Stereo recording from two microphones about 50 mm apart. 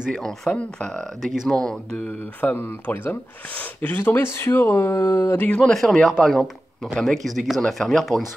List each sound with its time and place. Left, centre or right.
0.5 s speech: centre
1.2 s speech: centre
1.6 s speech: centre
2.4 s speech: left
5.6 s speech: centre